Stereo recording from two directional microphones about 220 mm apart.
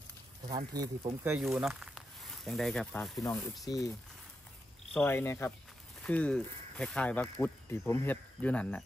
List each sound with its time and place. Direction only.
0.4 s a sound: 15° right (ahead or behind)
0.7 s speech: 15° right (ahead or behind); by 3.9 s 15° left (ahead or behind)
4.9 s speech: 10° left (ahead or behind)